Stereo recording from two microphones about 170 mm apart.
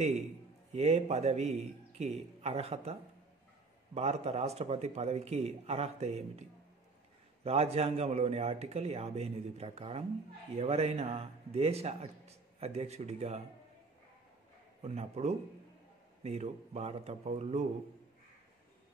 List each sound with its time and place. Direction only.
0.7 s a man's voice: 40° right (ahead or behind)
7.4 s a man's voice: 35° right (ahead or behind)
14.8 s a man's voice: 40° right (ahead or behind)